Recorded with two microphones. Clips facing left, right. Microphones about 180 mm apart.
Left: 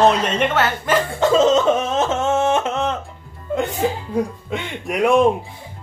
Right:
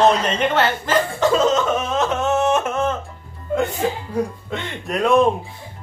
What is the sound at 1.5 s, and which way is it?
Yodeling, 25° left (ahead or behind).